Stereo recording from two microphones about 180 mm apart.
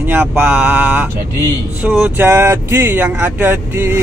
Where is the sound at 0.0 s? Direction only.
10° right (ahead or behind).